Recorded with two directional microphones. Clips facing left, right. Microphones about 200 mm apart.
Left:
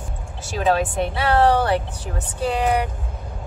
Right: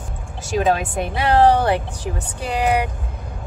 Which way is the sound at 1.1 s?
15° right (ahead or behind).